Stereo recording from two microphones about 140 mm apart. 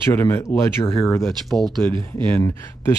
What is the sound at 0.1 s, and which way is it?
Speech, 15° left (ahead or behind).